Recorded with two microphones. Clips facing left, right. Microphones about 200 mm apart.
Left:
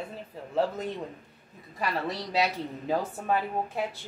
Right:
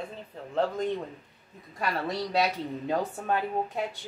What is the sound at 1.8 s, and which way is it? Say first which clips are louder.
Speech: right 1 dB; centre (ahead or behind).